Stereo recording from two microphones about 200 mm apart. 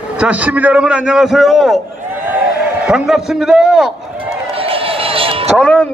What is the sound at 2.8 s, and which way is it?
Run, centre (ahead or behind).